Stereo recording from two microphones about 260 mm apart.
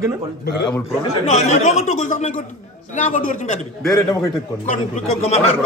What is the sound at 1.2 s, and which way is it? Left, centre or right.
Speech, left.